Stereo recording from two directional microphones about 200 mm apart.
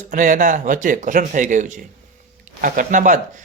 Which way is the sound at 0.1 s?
40° right (ahead or behind).